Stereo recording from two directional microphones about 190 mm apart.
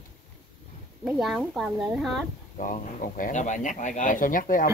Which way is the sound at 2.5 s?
45° left (ahead or behind).